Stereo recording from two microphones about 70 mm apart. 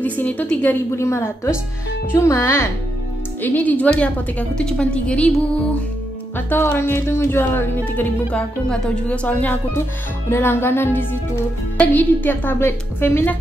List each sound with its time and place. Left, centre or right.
0.0 s a woman's voice: left
0.7 s speech: left
3.3 s a woman's voice: left
6.3 s speech: left
8.3 s a woman's voice: centre
10.3 s a woman's voice: left